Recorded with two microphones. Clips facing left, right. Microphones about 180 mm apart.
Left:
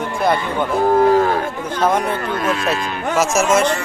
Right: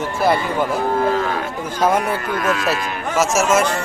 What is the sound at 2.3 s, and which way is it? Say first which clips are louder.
Speech: right 1 dB; 25° left (ahead or behind).